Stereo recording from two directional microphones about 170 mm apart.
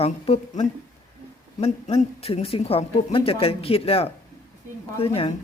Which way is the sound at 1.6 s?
35° left (ahead or behind).